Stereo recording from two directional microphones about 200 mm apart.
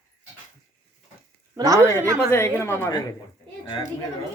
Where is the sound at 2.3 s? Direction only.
10° left (ahead or behind).